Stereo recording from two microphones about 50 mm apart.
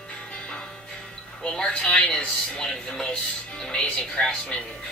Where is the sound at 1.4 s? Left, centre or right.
Centre.